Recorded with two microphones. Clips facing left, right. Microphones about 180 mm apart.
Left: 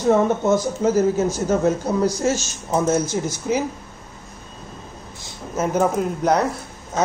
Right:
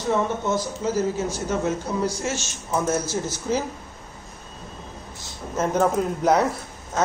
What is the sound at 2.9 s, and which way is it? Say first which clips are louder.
Speech: left 4 dB; 15° left (ahead or behind).